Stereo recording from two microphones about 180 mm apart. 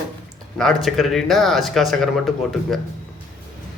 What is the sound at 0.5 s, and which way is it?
Speech, centre (ahead or behind).